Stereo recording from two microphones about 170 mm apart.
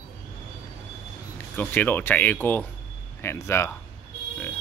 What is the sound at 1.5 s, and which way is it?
Speech, 10° left (ahead or behind).